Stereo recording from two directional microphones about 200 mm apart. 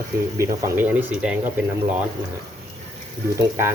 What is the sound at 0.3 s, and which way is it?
Speech, 10° right (ahead or behind).